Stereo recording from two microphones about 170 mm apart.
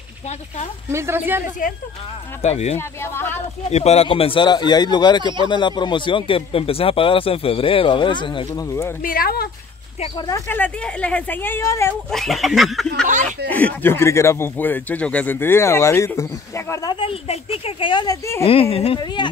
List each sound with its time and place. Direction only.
0.9 s speech: 15° right (ahead or behind)
1.6 s a woman's voice: 50° left (ahead or behind)
2.4 s speech: 40° left (ahead or behind)
2.8 s speech: 15° left (ahead or behind)
3.7 s speech: 40° left (ahead or behind); by 8.9 s 15° left (ahead or behind)
9.0 s speech: 60° left (ahead or behind)
9.9 s speech: 35° left (ahead or behind)
10.2 s speech: 15° left (ahead or behind)
12.1 s speech: centre (ahead or behind); by 16.9 s 15° left (ahead or behind)
16.9 s speech: 35° left (ahead or behind)
18.4 s speech: 35° left (ahead or behind)